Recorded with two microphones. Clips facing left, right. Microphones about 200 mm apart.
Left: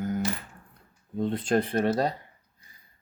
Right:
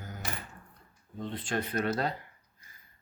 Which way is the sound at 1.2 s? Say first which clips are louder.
Left 9 dB; 45° left (ahead or behind).